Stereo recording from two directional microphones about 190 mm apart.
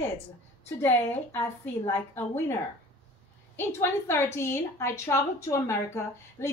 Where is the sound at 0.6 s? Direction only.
10° left (ahead or behind).